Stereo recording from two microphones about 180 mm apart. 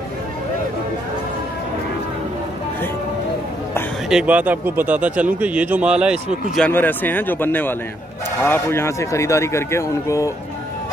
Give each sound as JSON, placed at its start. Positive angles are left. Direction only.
{"t": 4.1, "sound": "speech", "side_deg": -5}
{"t": 6.5, "sound": "speech", "side_deg": 10}